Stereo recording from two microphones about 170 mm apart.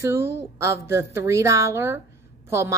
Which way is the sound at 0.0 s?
15° right (ahead or behind).